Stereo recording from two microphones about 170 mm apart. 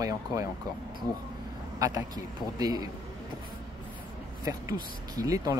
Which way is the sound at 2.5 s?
20° right (ahead or behind).